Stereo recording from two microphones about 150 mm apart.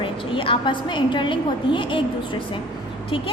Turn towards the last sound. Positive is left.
turn(degrees=35)  # may be behind; listen again after turning